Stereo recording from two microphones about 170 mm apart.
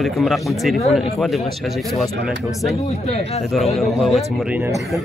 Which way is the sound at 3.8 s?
Centre (ahead or behind).